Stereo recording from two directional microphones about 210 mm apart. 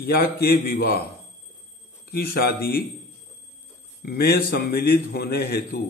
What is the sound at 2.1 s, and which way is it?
Speech, 45° left (ahead or behind).